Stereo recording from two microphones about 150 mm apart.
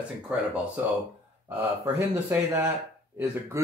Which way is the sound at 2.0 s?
15° right (ahead or behind).